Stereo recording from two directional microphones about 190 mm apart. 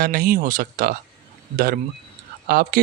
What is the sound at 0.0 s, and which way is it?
Speech, 45° right (ahead or behind).